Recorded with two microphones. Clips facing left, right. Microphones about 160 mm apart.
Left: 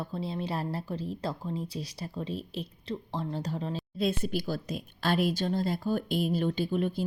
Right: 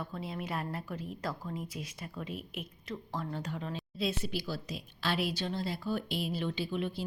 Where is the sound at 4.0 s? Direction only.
50° left (ahead or behind).